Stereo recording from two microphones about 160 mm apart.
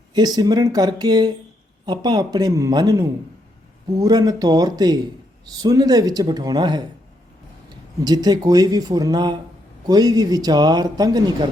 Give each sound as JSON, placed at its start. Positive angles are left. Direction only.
{"t": 0.1, "sound": "speech", "side_deg": -25}
{"t": 8.0, "sound": "speech", "side_deg": -25}